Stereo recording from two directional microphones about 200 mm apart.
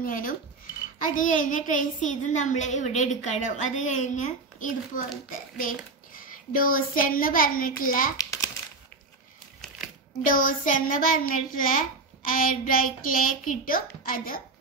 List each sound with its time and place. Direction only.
0.0 s a child's voice: 45° left (ahead or behind)
8.2 s crumpling: 15° left (ahead or behind)
10.2 s a child's voice: 45° left (ahead or behind)